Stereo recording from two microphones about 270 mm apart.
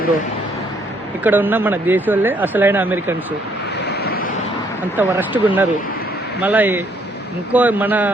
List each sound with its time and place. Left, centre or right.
1.2 s speech: centre
4.0 s vehicle: left
4.9 s a man's voice: centre